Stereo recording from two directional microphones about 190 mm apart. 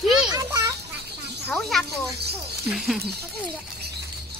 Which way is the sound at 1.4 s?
Centre (ahead or behind).